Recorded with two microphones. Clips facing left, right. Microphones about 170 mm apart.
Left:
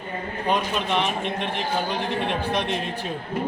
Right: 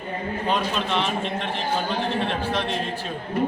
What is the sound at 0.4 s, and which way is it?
Speech, 15° left (ahead or behind).